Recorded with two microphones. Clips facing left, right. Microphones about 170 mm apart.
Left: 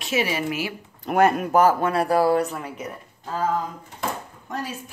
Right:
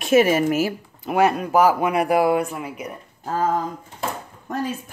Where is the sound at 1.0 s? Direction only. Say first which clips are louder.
Even; 5° right (ahead or behind).